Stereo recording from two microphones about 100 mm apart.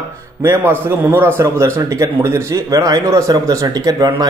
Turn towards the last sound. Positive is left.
turn(degrees=-40)  # may be behind; listen again after turning